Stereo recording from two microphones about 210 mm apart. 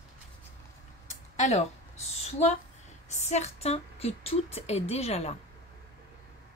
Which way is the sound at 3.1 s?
30° left (ahead or behind).